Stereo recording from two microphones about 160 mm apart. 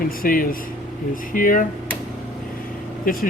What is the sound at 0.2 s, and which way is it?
Speech, 65° left (ahead or behind).